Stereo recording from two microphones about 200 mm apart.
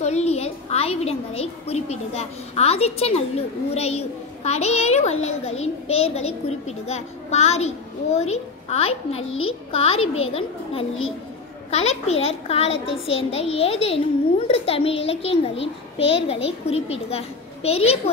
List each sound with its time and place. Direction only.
0.0 s a woman's voice: 35° left (ahead or behind)
9.3 s a child's voice: 90° left
9.7 s a child's voice: 30° left (ahead or behind)